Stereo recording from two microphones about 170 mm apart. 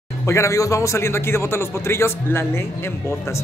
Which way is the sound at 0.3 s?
15° left (ahead or behind).